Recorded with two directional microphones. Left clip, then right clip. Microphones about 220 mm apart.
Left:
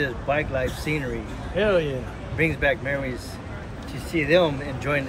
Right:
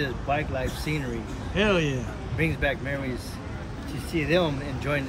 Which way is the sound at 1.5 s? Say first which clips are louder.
Left 3 dB; 30° right (ahead or behind).